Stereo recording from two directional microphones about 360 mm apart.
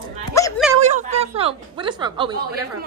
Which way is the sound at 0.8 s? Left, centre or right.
Centre.